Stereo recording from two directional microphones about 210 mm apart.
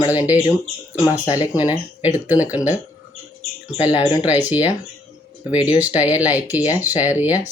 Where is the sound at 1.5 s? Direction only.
10° right (ahead or behind).